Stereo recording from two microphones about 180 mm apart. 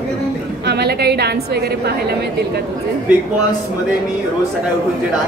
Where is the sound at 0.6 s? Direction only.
65° right (ahead or behind).